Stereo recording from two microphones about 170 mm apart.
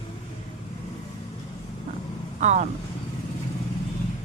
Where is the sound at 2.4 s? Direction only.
45° right (ahead or behind).